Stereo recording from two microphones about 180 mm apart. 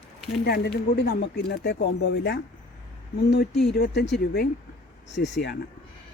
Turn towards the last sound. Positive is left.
turn(degrees=75)  # may be behind; listen again after turning